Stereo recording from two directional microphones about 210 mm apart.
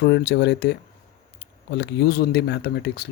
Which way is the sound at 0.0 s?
55° left (ahead or behind).